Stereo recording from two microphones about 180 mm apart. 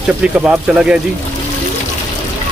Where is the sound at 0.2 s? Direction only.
5° right (ahead or behind).